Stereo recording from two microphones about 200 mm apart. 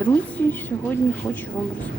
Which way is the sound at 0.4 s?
10° left (ahead or behind).